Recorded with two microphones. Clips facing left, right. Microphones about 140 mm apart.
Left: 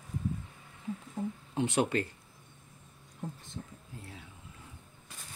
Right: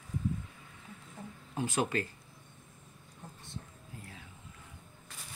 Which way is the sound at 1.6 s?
25° left (ahead or behind).